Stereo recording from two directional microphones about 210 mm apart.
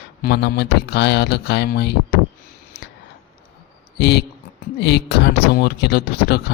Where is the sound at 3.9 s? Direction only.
55° left (ahead or behind).